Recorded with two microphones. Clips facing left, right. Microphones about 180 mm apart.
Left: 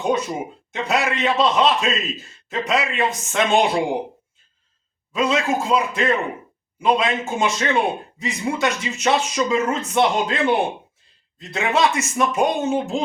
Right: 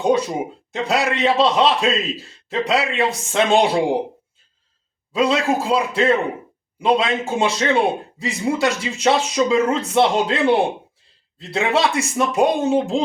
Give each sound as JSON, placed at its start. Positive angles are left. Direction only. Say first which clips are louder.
{"t": 0.7, "sound": "speech", "louder": "right 1 dB", "side_deg": -35}
{"t": 5.1, "sound": "speech", "louder": "right 2 dB", "side_deg": -35}